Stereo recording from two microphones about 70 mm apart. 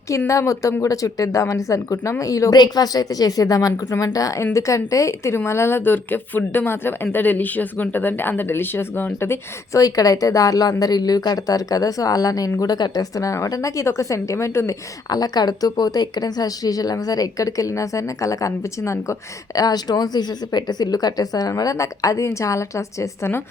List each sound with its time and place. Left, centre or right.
0.3 s speech: left
2.6 s a woman's voice: left
9.7 s a woman's voice: left
15.1 s a woman's voice: left
19.5 s a woman's voice: left